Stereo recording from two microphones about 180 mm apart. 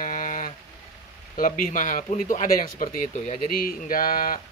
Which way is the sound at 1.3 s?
50° left (ahead or behind).